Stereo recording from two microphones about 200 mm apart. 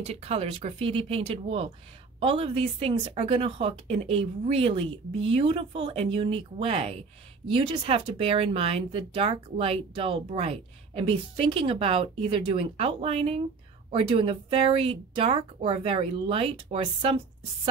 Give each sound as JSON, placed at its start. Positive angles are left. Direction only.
{"t": 0.0, "sound": "speech", "side_deg": -30}